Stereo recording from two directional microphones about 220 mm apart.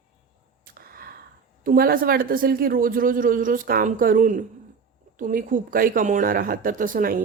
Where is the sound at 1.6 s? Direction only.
40° right (ahead or behind).